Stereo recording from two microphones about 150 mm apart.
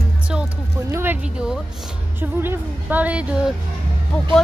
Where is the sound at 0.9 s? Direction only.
15° right (ahead or behind).